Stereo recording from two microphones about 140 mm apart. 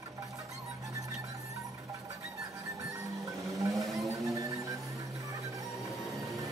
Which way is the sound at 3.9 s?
25° right (ahead or behind).